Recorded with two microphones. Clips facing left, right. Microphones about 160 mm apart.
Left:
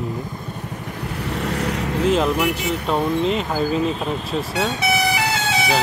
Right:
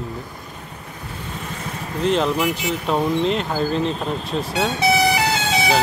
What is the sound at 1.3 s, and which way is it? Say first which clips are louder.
Vehicle: left 9 dB; 75° left (ahead or behind).